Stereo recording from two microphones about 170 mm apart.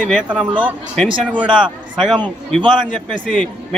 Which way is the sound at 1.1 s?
30° right (ahead or behind).